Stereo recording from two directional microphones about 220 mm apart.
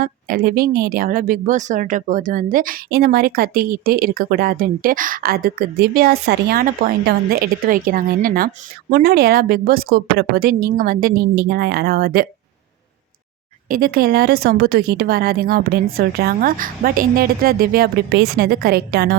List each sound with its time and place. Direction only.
0.0 s a woman's voice: 40° right (ahead or behind)
13.7 s a woman's voice: 40° right (ahead or behind)